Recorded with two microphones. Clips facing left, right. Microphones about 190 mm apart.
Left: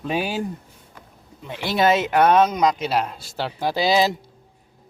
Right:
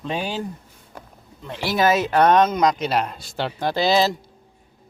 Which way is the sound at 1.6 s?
25° left (ahead or behind).